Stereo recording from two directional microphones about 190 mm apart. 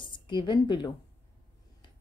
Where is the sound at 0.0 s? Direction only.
25° left (ahead or behind).